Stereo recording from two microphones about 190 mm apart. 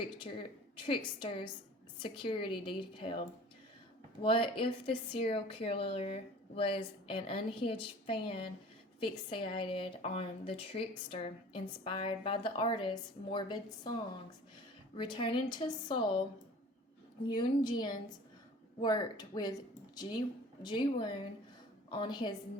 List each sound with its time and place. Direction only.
0.8 s speech: 25° left (ahead or behind)
4.2 s speech: 25° left (ahead or behind)
14.9 s speech: 25° left (ahead or behind)
17.3 s speech: 25° left (ahead or behind)